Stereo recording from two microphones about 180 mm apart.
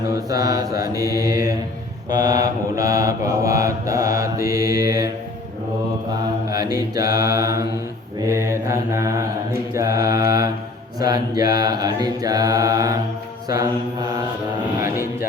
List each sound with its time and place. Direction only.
0.1 s mantra: 20° right (ahead or behind)
6.5 s mantra: 20° right (ahead or behind)
14.8 s mantra: 15° right (ahead or behind)